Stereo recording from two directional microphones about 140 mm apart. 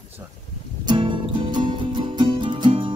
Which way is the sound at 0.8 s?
35° right (ahead or behind).